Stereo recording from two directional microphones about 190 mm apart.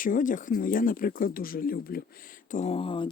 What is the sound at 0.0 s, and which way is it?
Speech, 45° left (ahead or behind).